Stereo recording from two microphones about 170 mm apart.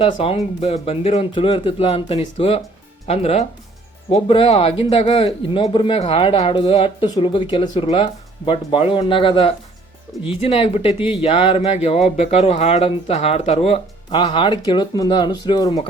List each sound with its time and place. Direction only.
0.0 s speech: 35° left (ahead or behind)